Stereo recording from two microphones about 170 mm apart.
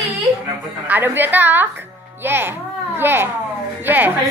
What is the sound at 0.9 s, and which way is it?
A woman's voice, 10° right (ahead or behind).